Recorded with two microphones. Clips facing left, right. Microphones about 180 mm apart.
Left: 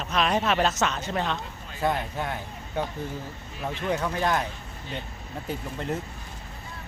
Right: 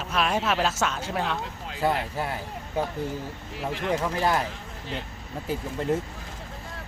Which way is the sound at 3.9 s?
5° right (ahead or behind).